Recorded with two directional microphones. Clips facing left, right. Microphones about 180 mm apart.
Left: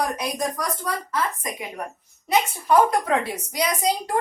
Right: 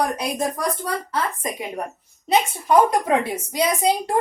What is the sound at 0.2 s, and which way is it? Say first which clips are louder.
A woman's voice: right 2 dB; 25° right (ahead or behind).